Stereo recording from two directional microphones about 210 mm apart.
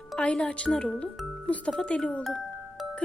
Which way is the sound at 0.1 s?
5° left (ahead or behind).